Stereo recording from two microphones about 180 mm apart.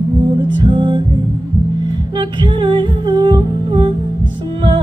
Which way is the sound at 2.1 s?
25° right (ahead or behind).